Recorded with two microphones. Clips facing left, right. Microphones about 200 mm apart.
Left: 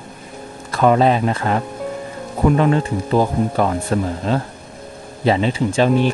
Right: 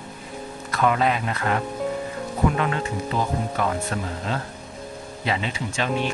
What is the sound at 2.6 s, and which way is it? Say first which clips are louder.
Speech: left 8 dB; 35° left (ahead or behind).